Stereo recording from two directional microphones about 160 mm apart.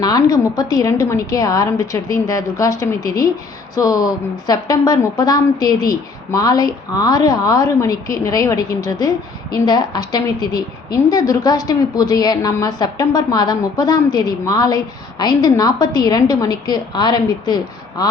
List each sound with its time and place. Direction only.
0.0 s a woman's voice: 25° left (ahead or behind)